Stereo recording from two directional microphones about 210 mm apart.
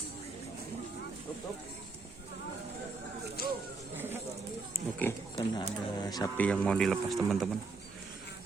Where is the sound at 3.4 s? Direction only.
45° left (ahead or behind).